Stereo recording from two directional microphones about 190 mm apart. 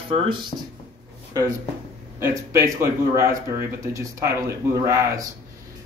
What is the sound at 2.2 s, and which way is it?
Speech, 15° right (ahead or behind).